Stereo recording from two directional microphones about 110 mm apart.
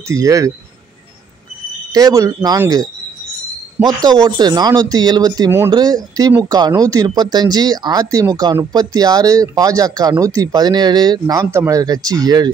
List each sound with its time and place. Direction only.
0.1 s speech: 30° right (ahead or behind)
1.9 s speech: 35° right (ahead or behind)
3.8 s speech: 40° right (ahead or behind)